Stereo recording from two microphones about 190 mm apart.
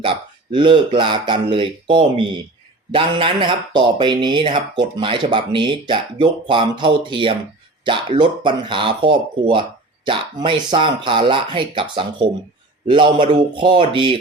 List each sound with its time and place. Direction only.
0.0 s speech: 25° right (ahead or behind)